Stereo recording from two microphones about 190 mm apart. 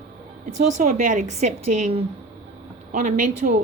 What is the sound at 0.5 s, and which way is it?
A woman's voice, 40° right (ahead or behind).